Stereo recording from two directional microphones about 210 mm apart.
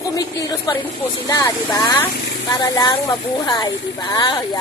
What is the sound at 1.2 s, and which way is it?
Speech, 15° left (ahead or behind).